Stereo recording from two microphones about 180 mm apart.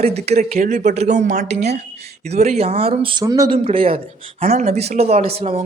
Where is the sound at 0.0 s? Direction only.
35° right (ahead or behind).